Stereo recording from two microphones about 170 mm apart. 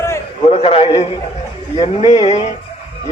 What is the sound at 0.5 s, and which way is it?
Speech, 35° left (ahead or behind).